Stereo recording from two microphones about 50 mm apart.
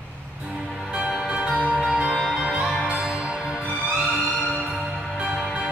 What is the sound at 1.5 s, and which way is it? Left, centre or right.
Music, left.